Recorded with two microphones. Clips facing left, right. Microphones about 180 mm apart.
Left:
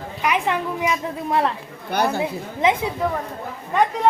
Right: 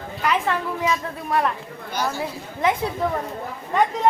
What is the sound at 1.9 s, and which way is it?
Speech, 60° left (ahead or behind).